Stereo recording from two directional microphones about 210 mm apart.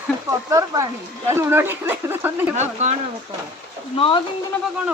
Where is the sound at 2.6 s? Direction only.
30° right (ahead or behind).